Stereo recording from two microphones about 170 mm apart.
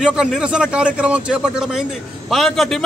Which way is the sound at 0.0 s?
5° right (ahead or behind).